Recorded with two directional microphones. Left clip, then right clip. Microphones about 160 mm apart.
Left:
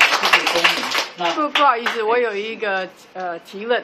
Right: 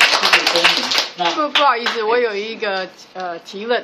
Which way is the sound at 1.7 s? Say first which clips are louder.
Right 1 dB; 5° left (ahead or behind).